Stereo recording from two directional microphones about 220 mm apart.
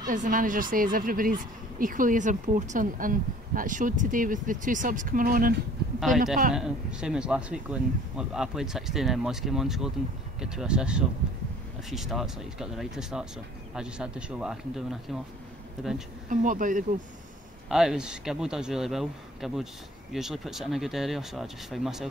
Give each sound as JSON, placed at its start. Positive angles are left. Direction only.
{"t": 0.1, "sound": "speech", "side_deg": -35}
{"t": 5.9, "sound": "a man's voice", "side_deg": 0}
{"t": 16.3, "sound": "speech", "side_deg": -35}
{"t": 17.6, "sound": "a man's voice", "side_deg": 0}